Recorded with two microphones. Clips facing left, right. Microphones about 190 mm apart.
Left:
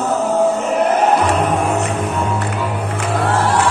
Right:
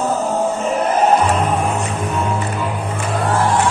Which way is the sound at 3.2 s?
75° left (ahead or behind).